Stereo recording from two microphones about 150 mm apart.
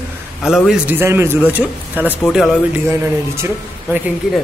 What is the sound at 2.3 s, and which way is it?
Speech, centre (ahead or behind).